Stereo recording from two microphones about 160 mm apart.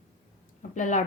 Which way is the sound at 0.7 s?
50° left (ahead or behind).